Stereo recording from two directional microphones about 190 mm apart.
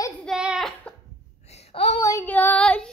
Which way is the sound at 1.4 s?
35° left (ahead or behind).